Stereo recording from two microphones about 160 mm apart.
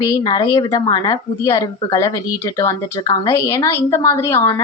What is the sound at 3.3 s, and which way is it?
Speech, 20° left (ahead or behind).